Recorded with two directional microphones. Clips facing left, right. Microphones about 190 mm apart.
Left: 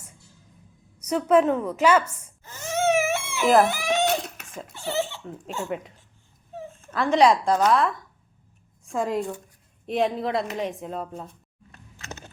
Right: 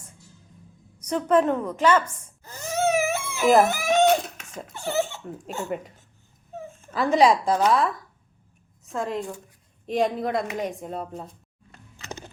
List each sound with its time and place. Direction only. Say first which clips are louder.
0.9 s a woman's voice: left 1 dB; 10° left (ahead or behind)
2.4 s baby cry: even; 35° right (ahead or behind)
3.6 s speech: right 2 dB; 45° right (ahead or behind)
6.9 s a woman's voice: even; 5° right (ahead or behind)
8.9 s a woman's voice: left 3 dB; 15° left (ahead or behind)
9.8 s a woman's voice: even; centre (ahead or behind)